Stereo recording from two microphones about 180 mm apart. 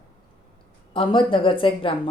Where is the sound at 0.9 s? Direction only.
30° left (ahead or behind).